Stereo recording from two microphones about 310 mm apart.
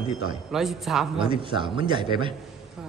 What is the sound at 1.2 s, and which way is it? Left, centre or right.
A man's voice, centre.